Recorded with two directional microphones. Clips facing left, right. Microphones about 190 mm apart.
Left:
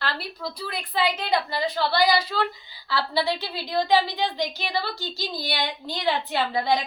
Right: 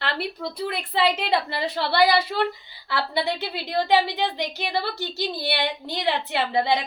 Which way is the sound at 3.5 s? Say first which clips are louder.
Right 1 dB; 65° right (ahead or behind).